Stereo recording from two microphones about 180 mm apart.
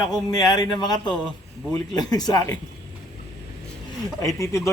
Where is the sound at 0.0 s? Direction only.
20° left (ahead or behind).